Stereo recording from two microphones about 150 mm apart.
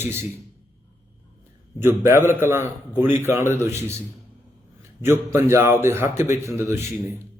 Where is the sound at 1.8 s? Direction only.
15° right (ahead or behind).